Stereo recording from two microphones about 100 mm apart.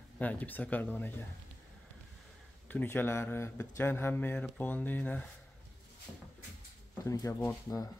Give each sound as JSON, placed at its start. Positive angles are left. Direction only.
{"t": 0.2, "sound": "speech", "side_deg": 15}
{"t": 2.7, "sound": "speech", "side_deg": 20}
{"t": 7.1, "sound": "speech", "side_deg": 30}